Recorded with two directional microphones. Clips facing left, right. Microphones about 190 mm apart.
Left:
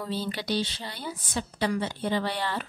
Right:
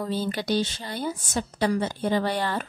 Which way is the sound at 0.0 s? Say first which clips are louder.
Right 4 dB; 45° right (ahead or behind).